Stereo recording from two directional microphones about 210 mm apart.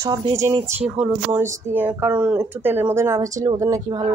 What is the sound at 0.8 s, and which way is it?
Speech, 5° right (ahead or behind).